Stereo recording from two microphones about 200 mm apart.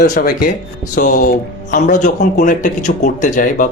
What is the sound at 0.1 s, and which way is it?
Speech, 55° left (ahead or behind).